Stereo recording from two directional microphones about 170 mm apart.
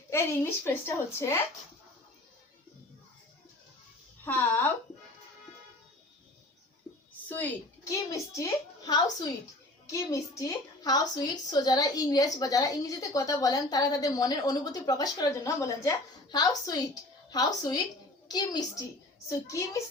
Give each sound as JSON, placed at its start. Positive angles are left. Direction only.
{"t": 0.1, "sound": "a woman's voice", "side_deg": 15}
{"t": 4.3, "sound": "a woman's voice", "side_deg": 10}
{"t": 7.3, "sound": "a woman's voice", "side_deg": 10}